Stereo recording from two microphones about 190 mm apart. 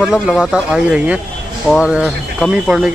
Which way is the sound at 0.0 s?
Centre (ahead or behind).